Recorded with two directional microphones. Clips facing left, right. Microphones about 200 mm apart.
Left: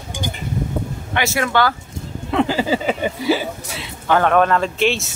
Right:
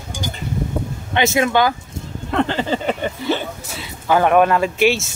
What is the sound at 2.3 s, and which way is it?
Speech, 5° left (ahead or behind).